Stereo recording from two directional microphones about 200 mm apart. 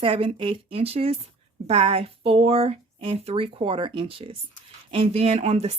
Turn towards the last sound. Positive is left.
turn(degrees=-30)  # may be behind; listen again after turning